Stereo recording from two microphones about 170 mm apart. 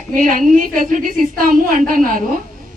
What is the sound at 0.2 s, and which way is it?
A woman's voice, 55° right (ahead or behind).